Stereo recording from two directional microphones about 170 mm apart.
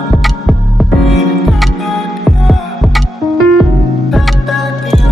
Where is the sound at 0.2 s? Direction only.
Centre (ahead or behind).